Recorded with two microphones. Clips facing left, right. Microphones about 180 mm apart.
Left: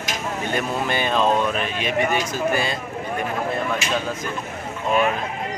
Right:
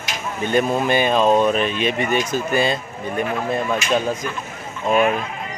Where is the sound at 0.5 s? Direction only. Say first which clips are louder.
Right 7 dB; 15° right (ahead or behind).